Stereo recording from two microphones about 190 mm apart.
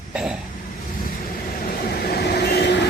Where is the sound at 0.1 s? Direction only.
5° right (ahead or behind).